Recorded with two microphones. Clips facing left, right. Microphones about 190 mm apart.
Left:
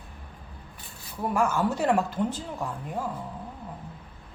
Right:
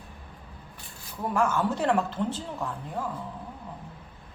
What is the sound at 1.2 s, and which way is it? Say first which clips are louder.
A woman's voice: left 1 dB; 10° left (ahead or behind).